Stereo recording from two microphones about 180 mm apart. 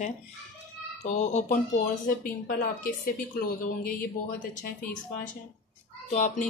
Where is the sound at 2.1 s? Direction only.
50° left (ahead or behind).